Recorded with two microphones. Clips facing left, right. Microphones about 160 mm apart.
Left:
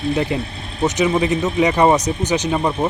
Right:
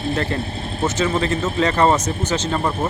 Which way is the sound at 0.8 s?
15° left (ahead or behind).